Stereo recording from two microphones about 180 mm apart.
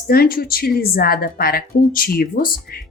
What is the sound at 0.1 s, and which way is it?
Speech, 55° left (ahead or behind).